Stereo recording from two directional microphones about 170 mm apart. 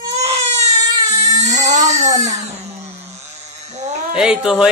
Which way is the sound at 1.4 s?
45° right (ahead or behind).